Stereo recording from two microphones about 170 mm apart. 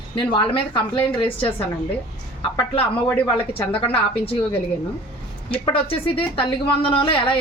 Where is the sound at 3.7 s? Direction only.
35° left (ahead or behind).